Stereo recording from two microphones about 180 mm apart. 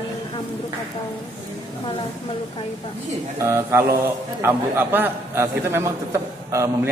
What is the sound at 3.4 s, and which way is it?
A man's voice, 15° right (ahead or behind).